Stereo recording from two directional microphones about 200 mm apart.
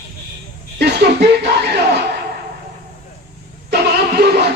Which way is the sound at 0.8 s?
55° right (ahead or behind).